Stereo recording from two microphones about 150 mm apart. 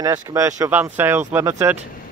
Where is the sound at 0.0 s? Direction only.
20° right (ahead or behind).